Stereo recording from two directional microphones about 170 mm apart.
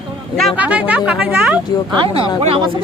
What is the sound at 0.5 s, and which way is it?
Speech, 10° right (ahead or behind).